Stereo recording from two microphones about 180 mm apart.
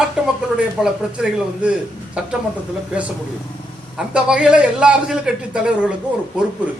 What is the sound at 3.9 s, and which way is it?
A man's voice, 5° right (ahead or behind).